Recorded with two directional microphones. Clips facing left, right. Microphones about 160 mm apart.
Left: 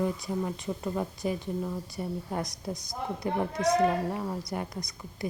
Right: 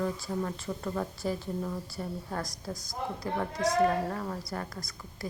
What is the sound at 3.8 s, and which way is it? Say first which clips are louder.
Speech: left 1 dB; 15° left (ahead or behind).